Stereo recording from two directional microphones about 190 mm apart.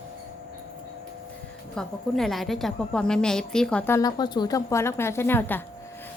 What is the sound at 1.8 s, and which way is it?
A woman's voice, centre (ahead or behind).